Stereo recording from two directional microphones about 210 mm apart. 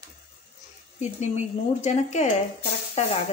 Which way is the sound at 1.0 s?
35° left (ahead or behind).